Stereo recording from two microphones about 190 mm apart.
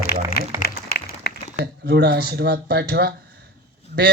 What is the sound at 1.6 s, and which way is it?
Speech, 55° right (ahead or behind).